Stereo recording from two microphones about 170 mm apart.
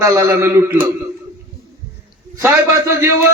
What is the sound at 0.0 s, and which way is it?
Speech, 15° right (ahead or behind).